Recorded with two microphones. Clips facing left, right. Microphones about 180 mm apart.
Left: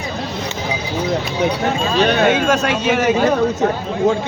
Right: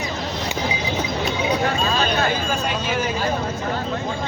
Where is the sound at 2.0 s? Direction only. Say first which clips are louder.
Left 8 dB; 75° left (ahead or behind).